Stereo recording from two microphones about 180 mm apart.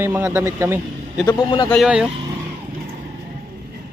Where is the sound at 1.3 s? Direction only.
25° left (ahead or behind).